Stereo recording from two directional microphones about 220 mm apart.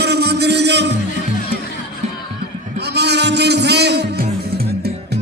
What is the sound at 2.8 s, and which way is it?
Music, 50° right (ahead or behind).